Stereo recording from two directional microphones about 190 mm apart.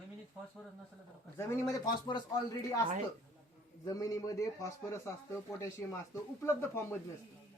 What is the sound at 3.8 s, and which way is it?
A man's voice, 20° left (ahead or behind).